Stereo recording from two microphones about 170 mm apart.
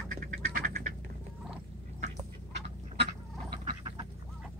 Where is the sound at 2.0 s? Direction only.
75° right (ahead or behind).